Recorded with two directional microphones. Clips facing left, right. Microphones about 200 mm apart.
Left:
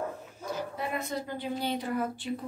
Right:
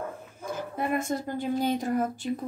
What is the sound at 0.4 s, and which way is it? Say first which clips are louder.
A woman's voice: right 3 dB; 50° right (ahead or behind).